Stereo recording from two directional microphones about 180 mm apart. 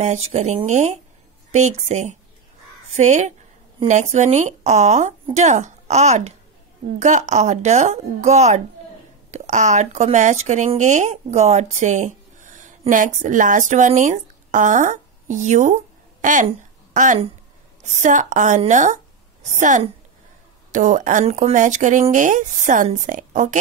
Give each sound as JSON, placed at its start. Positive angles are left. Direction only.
{"t": 0.0, "sound": "a woman's voice", "side_deg": -40}